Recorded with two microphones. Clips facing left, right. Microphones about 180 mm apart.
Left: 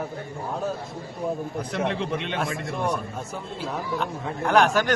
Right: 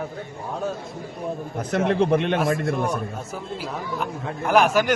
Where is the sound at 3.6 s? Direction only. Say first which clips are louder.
Left 3 dB; centre (ahead or behind).